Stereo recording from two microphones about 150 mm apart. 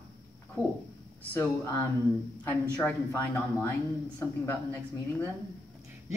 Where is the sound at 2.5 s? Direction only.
10° left (ahead or behind).